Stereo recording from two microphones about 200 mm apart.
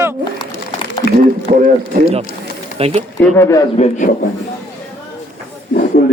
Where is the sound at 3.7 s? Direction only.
35° left (ahead or behind).